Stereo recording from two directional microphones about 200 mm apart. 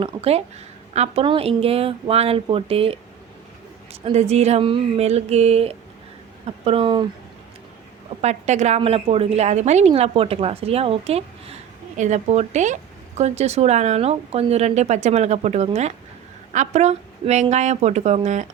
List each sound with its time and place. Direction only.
0.0 s speech: 30° right (ahead or behind)
4.0 s speech: 30° right (ahead or behind)
8.2 s a woman's voice: 35° right (ahead or behind)